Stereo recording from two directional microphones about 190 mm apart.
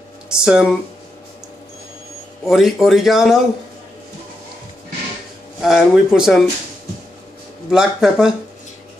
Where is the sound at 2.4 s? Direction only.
Centre (ahead or behind).